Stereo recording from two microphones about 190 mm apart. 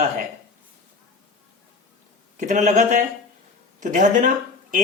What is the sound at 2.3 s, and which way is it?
Speech, 40° right (ahead or behind).